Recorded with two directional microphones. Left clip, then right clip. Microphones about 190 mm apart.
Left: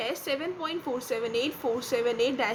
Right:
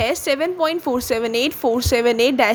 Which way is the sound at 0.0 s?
60° right (ahead or behind).